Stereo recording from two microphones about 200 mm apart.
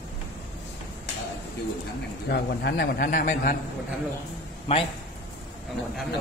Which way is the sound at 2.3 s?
50° left (ahead or behind).